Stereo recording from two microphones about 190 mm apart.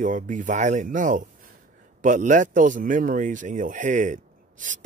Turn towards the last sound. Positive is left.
turn(degrees=-40)  # may be behind; listen again after turning